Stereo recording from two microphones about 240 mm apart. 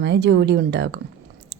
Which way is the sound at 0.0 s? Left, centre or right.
Right.